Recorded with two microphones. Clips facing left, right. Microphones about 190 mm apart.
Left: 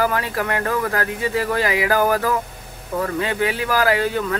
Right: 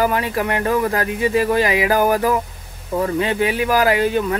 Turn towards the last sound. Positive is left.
turn(degrees=-20)  # may be behind; listen again after turning